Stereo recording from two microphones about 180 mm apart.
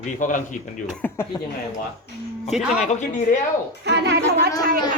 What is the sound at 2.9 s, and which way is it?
Speech, 45° left (ahead or behind).